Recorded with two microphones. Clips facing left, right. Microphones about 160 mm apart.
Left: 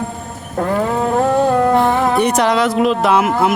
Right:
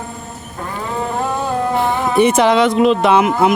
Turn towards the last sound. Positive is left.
turn(degrees=0)  # may be behind; listen again after turning